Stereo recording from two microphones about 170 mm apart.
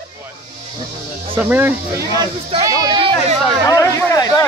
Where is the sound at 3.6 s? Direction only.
20° left (ahead or behind).